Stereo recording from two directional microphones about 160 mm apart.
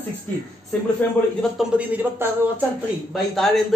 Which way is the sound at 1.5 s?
10° right (ahead or behind).